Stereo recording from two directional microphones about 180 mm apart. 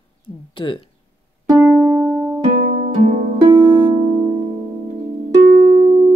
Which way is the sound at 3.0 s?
40° right (ahead or behind).